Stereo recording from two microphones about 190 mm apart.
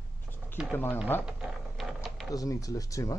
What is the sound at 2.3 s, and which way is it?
Speech, 20° left (ahead or behind).